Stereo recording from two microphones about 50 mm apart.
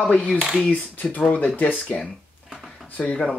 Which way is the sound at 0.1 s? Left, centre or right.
Left.